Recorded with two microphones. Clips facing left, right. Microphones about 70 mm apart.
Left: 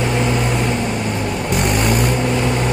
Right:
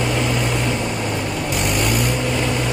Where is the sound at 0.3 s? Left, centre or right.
Left.